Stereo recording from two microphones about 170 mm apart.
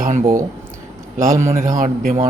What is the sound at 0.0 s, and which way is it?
Speech, 45° right (ahead or behind).